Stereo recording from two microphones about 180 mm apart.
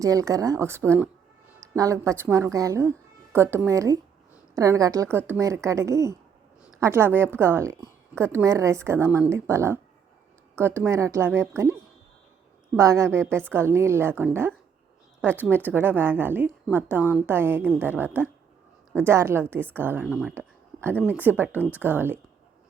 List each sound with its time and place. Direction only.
0.0 s a woman's voice: 20° right (ahead or behind)